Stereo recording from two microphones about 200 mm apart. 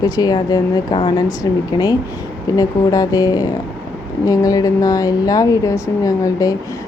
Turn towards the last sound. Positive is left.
turn(degrees=15)  # may be behind; listen again after turning